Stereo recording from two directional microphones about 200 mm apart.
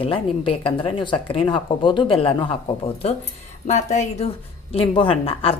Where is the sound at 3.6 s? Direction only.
35° left (ahead or behind).